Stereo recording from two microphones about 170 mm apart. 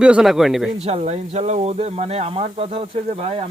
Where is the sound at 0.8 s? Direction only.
40° right (ahead or behind).